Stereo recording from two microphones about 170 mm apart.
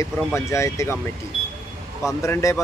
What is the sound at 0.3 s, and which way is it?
Speech, 15° left (ahead or behind).